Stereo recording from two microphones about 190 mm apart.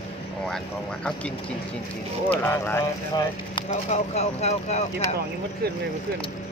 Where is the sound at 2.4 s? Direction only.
10° left (ahead or behind).